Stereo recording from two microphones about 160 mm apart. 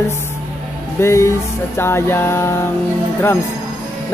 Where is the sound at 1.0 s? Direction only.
15° left (ahead or behind).